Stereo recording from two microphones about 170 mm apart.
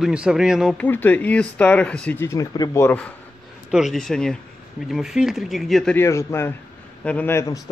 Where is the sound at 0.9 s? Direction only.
10° left (ahead or behind).